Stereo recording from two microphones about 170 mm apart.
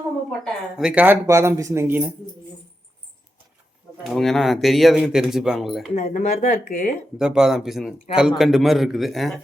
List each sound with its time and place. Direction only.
0.3 s speech: centre (ahead or behind)
4.0 s a man's voice: centre (ahead or behind)
5.9 s speech: 45° left (ahead or behind)
7.2 s a man's voice: 5° right (ahead or behind)